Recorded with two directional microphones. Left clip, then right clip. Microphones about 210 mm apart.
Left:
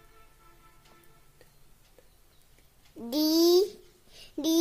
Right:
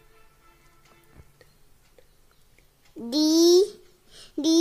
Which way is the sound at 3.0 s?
20° right (ahead or behind).